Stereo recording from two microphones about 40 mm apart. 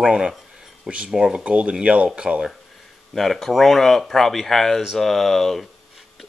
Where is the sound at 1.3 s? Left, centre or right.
Right.